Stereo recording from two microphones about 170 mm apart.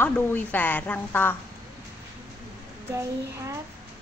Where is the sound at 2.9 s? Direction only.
15° right (ahead or behind).